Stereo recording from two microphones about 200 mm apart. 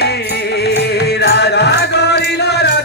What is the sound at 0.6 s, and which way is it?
Music, 55° left (ahead or behind).